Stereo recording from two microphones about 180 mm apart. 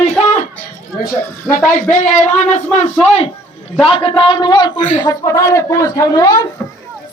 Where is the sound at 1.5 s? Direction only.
Centre (ahead or behind).